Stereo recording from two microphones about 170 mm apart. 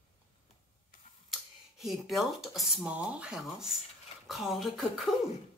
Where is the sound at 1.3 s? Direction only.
Centre (ahead or behind).